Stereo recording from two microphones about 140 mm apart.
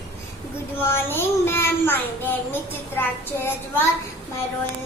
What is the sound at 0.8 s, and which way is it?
A child's voice, 15° left (ahead or behind).